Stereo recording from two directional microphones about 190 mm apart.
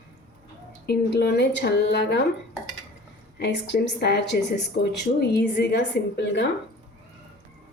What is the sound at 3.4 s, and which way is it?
A woman's voice, 60° left (ahead or behind).